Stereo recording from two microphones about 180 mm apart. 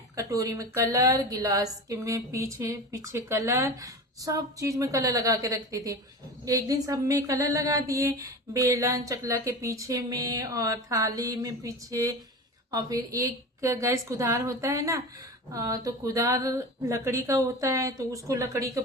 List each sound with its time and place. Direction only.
0.2 s a woman's voice: 20° right (ahead or behind)